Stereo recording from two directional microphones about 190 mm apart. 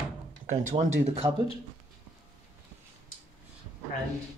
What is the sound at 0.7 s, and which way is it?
Speech, 35° right (ahead or behind).